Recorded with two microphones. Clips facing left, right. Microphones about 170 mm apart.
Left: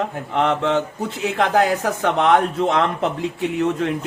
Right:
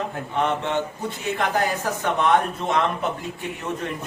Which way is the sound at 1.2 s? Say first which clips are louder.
Left 6 dB; 75° left (ahead or behind).